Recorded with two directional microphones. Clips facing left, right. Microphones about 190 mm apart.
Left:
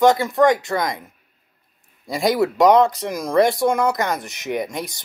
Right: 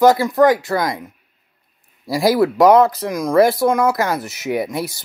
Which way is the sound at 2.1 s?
Centre (ahead or behind).